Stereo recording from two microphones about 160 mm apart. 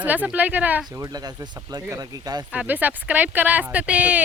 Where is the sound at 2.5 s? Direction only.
10° right (ahead or behind).